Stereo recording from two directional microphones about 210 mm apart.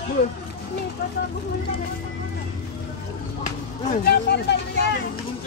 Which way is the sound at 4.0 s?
50° left (ahead or behind).